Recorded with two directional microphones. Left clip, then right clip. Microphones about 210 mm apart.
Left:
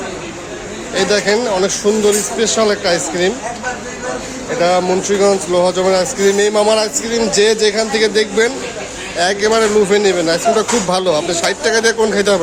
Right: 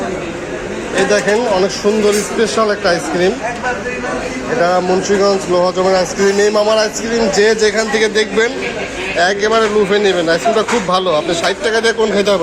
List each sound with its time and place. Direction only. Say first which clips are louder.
0.9 s speech: right 1 dB; 20° left (ahead or behind)
4.6 s speech: even; 20° left (ahead or behind)